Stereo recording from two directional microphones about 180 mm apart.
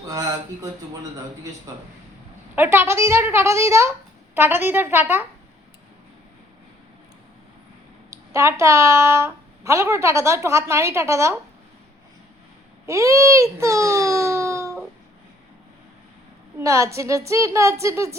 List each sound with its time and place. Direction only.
0.0 s speech: 20° right (ahead or behind)
2.6 s a woman's voice: 15° right (ahead or behind)
8.1 s a woman's voice: 15° right (ahead or behind)
12.8 s a child's voice: 15° right (ahead or behind)
16.6 s a woman's voice: 15° right (ahead or behind)